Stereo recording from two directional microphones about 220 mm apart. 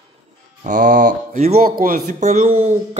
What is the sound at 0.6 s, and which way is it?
Speech, 35° right (ahead or behind).